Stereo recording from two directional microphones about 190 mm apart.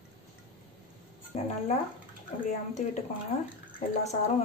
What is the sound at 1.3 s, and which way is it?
Speech, 35° left (ahead or behind).